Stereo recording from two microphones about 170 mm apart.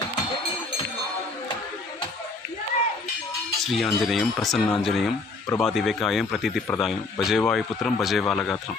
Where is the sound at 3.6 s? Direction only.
Centre (ahead or behind).